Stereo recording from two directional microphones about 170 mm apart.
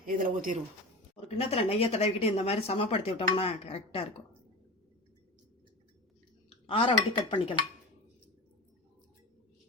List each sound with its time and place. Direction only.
0.0 s speech: 55° right (ahead or behind)
1.1 s speech: 35° left (ahead or behind)
6.7 s speech: 30° left (ahead or behind)